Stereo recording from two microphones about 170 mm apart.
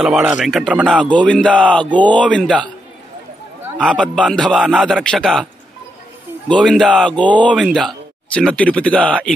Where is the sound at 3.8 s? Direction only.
5° left (ahead or behind).